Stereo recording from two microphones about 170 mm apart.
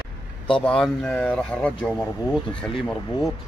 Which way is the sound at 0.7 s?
5° left (ahead or behind).